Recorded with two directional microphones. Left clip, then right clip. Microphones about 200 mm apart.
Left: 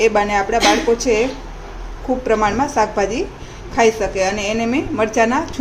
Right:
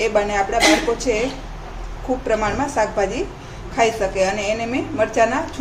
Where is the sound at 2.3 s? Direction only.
20° left (ahead or behind).